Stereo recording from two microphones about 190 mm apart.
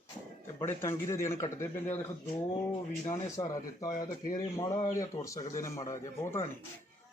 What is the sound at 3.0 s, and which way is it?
Speech, 15° left (ahead or behind).